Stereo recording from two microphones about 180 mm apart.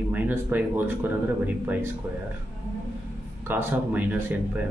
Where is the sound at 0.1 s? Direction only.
10° right (ahead or behind).